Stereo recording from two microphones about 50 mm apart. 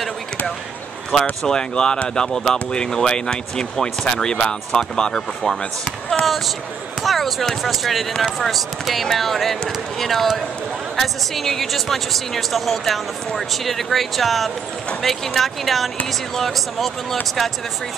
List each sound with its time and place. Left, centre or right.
1.4 s speech: centre
6.2 s speech: centre